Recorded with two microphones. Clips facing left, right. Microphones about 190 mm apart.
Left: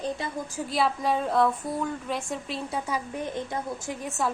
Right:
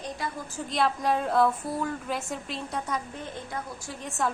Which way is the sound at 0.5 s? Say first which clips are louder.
Even; 5° left (ahead or behind).